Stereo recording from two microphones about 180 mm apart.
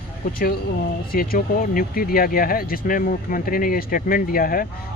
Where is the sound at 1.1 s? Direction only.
55° left (ahead or behind).